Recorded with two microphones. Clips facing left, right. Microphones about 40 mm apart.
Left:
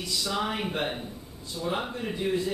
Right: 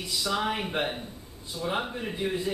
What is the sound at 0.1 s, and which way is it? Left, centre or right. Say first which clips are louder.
Speech: right 1 dB; centre.